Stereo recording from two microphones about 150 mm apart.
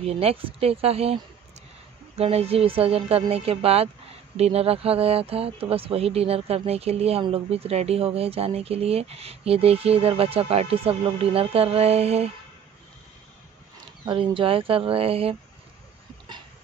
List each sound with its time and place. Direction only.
0.0 s speech: 40° right (ahead or behind)
14.0 s speech: 35° right (ahead or behind)